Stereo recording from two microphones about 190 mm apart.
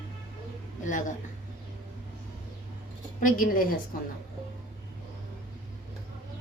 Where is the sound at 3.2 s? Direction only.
45° left (ahead or behind).